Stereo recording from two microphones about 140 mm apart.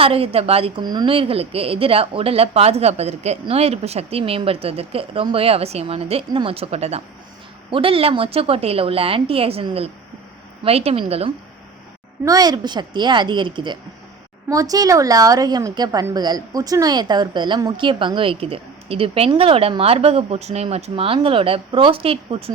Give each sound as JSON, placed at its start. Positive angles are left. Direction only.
{"t": 0.0, "sound": "speech", "side_deg": -45}
{"t": 12.2, "sound": "a woman's voice", "side_deg": -25}